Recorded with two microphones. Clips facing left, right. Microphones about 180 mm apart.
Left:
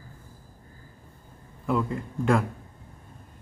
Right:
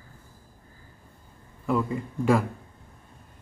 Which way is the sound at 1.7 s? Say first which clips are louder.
Right 1 dB; centre (ahead or behind).